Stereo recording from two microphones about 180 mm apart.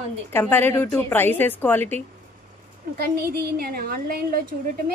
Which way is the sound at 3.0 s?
55° right (ahead or behind).